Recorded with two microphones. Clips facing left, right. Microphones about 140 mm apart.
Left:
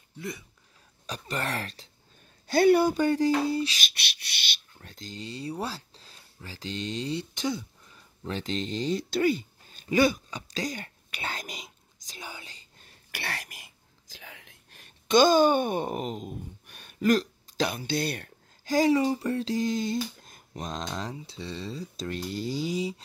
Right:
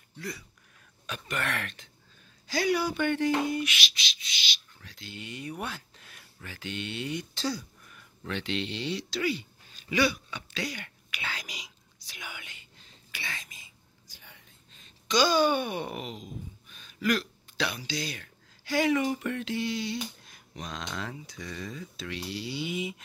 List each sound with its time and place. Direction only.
1.0 s speech: 35° left (ahead or behind)
2.5 s speech: 55° left (ahead or behind)
3.0 s speech: 35° left (ahead or behind)
3.8 s speech: 60° left (ahead or behind)
4.7 s speech: 40° left (ahead or behind)
7.3 s speech: 20° left (ahead or behind)
11.2 s whispering: 50° left (ahead or behind)
12.8 s whispering: 65° left (ahead or behind); by 16.3 s 45° left (ahead or behind)
16.6 s hiccup: 65° left (ahead or behind)
17.0 s speech: 40° left (ahead or behind)
18.7 s speech: 35° left (ahead or behind)
20.2 s a sound: 45° left (ahead or behind)
20.8 s speech: 30° left (ahead or behind)